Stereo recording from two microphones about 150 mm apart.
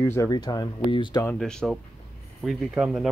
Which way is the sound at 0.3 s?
25° left (ahead or behind).